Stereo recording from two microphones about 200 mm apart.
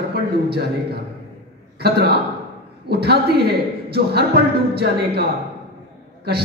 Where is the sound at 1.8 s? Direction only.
55° right (ahead or behind).